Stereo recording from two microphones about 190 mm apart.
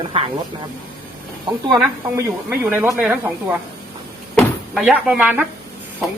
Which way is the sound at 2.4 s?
10° right (ahead or behind).